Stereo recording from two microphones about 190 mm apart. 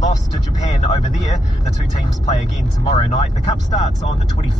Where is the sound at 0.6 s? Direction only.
35° left (ahead or behind).